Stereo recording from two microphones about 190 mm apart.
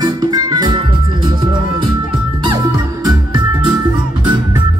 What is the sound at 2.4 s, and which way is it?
Music, 20° right (ahead or behind).